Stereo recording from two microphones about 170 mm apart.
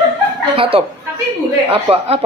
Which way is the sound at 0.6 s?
35° right (ahead or behind).